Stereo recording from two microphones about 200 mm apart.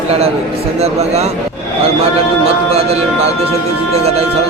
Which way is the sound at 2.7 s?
30° right (ahead or behind).